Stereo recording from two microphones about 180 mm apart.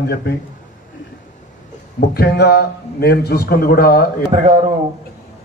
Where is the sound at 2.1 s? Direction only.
65° left (ahead or behind).